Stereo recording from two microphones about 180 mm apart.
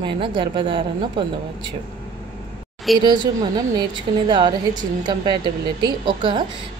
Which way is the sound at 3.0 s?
25° right (ahead or behind).